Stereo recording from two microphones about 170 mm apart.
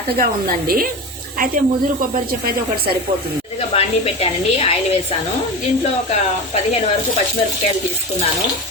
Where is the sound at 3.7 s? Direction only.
35° left (ahead or behind).